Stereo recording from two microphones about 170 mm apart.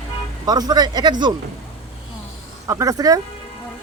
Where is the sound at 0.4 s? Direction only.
20° right (ahead or behind).